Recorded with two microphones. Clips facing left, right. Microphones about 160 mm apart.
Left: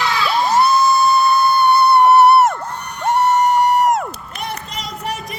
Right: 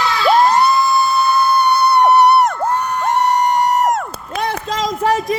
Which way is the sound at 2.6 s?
90° right.